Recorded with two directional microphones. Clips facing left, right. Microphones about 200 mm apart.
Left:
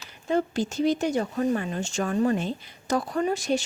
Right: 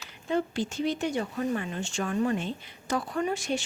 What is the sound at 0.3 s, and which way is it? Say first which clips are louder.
Speech: left 3 dB; 40° left (ahead or behind).